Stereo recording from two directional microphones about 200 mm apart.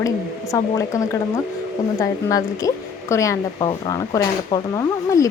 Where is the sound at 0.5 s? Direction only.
15° left (ahead or behind).